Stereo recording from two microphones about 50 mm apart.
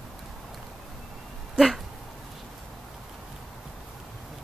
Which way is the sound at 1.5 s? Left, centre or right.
Centre.